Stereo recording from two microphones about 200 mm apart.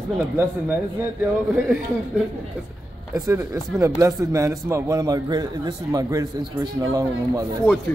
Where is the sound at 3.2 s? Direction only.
15° right (ahead or behind).